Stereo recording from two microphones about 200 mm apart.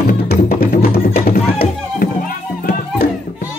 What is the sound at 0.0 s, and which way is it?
Music, 50° left (ahead or behind).